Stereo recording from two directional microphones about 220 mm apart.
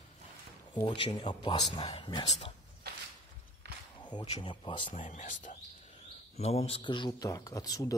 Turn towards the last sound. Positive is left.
turn(degrees=15)  # may be behind; listen again after turning